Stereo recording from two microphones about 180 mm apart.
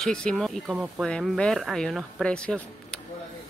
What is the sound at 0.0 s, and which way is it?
Speech, 5° left (ahead or behind).